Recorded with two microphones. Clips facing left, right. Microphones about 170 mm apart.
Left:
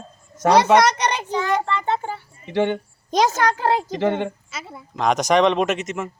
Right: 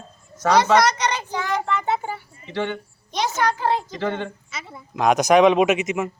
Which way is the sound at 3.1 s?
90° left.